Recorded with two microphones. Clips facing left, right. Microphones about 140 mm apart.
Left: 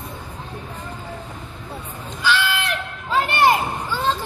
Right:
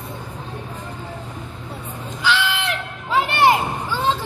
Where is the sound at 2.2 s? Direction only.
15° right (ahead or behind).